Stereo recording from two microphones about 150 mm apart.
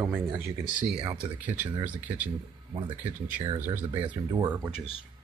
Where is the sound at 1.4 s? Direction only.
10° right (ahead or behind).